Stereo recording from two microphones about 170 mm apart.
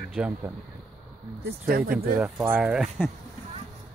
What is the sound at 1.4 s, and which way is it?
Speech, 65° right (ahead or behind).